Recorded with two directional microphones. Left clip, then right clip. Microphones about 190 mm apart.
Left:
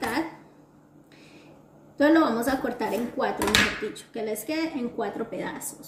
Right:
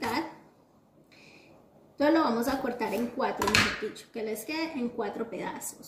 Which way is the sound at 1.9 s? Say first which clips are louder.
Left 4 dB; 5° right (ahead or behind).